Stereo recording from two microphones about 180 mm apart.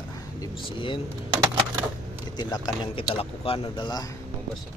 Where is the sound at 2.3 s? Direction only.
20° left (ahead or behind).